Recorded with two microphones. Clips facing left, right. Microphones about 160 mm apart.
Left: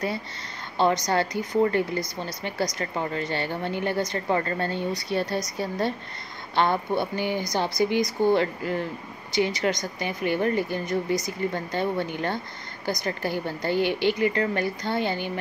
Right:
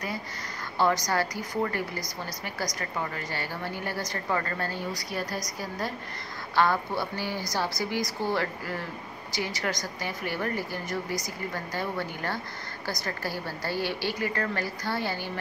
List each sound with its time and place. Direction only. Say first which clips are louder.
0.7 s speech: left 3 dB; 25° left (ahead or behind)